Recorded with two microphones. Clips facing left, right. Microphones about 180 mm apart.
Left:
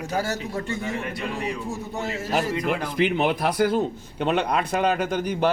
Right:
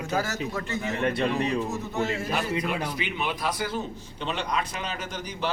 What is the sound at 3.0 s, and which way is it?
A man's voice, 55° left (ahead or behind).